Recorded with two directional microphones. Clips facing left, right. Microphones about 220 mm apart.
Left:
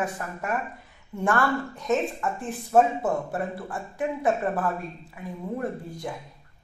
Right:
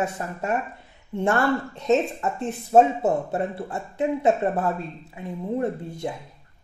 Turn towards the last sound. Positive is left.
turn(degrees=-25)  # may be behind; listen again after turning